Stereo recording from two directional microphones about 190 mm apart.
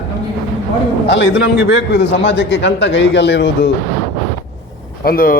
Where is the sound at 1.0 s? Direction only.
70° left (ahead or behind).